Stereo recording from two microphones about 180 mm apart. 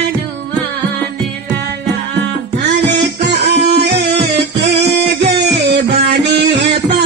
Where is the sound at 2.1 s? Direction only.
75° right (ahead or behind).